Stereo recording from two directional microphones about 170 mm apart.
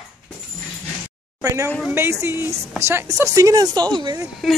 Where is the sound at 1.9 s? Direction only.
15° right (ahead or behind).